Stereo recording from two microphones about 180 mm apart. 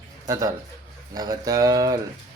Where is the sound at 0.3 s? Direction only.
20° right (ahead or behind).